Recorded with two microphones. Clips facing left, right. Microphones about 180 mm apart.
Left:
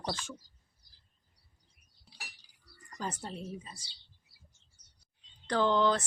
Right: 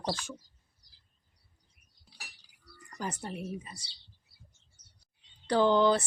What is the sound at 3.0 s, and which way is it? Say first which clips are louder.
Speech: right 2 dB; 15° right (ahead or behind).